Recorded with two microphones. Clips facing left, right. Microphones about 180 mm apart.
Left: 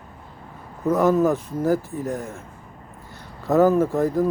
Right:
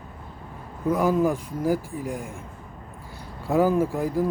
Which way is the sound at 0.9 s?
10° right (ahead or behind).